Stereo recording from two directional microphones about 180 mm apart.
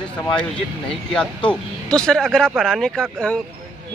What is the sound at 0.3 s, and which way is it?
Speech, 5° left (ahead or behind).